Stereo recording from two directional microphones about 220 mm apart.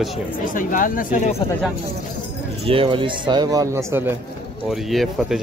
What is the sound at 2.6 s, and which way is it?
A man's voice, 25° right (ahead or behind).